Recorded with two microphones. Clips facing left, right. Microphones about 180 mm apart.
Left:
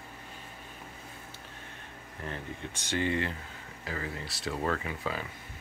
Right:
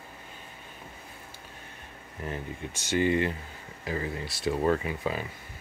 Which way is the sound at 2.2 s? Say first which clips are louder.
Right 3 dB; 15° right (ahead or behind).